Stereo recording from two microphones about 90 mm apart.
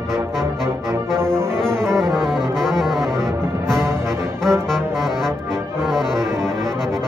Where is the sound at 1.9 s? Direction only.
5° left (ahead or behind).